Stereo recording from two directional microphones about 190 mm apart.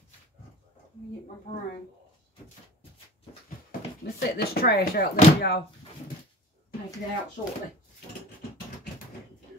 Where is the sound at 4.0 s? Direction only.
55° left (ahead or behind).